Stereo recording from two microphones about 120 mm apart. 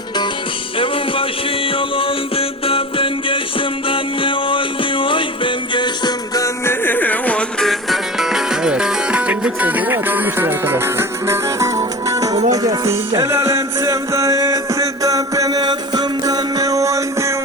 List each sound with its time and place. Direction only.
1.6 s music: 50° left (ahead or behind); by 17.3 s 25° right (ahead or behind)